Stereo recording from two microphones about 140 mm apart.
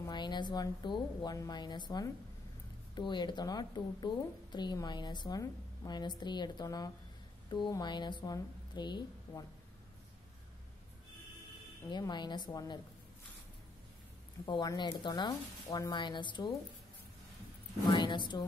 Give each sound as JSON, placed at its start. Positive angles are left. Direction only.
{"t": 0.0, "sound": "a woman's voice", "side_deg": 30}
{"t": 11.9, "sound": "a woman's voice", "side_deg": 30}
{"t": 14.4, "sound": "a woman's voice", "side_deg": 30}
{"t": 17.9, "sound": "speech", "side_deg": 35}